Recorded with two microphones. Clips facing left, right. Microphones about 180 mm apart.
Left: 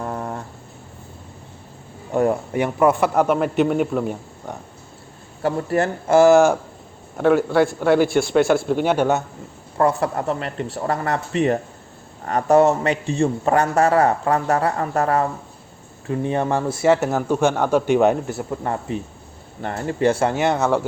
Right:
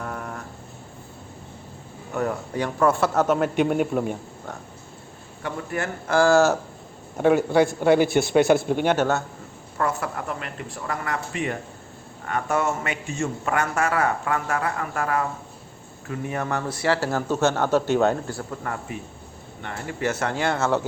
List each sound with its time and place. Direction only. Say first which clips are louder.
0.0 s a sound: left 5 dB; 30° left (ahead or behind)
2.1 s speech: left 7 dB; 25° left (ahead or behind)
3.3 s a man's voice: left 3 dB; centre (ahead or behind)
5.4 s speech: left 9 dB; 35° left (ahead or behind); by 6.6 s 15° left (ahead or behind)
7.2 s a man's voice: left 2 dB; 5° right (ahead or behind)
8.7 s speech: left 3 dB; 5° left (ahead or behind)
9.7 s a man's voice: left 7 dB; 35° left (ahead or behind); by 20.8 s 15° left (ahead or behind)